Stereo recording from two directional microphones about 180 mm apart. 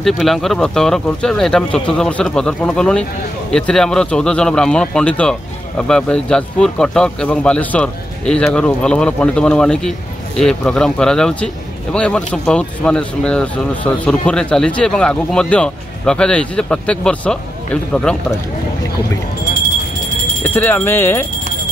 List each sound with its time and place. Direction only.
0.0 s speech: centre (ahead or behind)
20.4 s speech: 10° left (ahead or behind)